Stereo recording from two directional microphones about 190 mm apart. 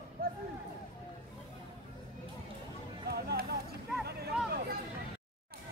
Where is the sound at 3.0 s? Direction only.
55° right (ahead or behind).